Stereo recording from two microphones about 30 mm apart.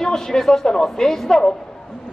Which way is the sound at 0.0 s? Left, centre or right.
Centre.